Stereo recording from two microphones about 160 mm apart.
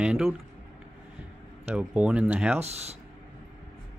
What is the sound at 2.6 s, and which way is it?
Speech, 40° right (ahead or behind).